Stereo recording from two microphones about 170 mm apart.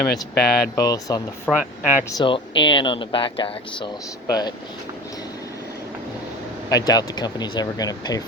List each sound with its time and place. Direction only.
0.1 s speech: 65° left (ahead or behind)
0.8 s speech: 20° left (ahead or behind)
1.5 s speech: 10° right (ahead or behind)
2.0 s speech: 25° left (ahead or behind)
6.7 s speech: 20° left (ahead or behind)